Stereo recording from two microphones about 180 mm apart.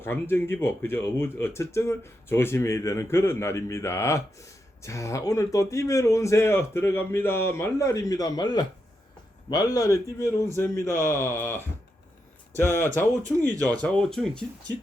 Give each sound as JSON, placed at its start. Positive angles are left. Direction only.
{"t": 0.0, "sound": "speech", "side_deg": 15}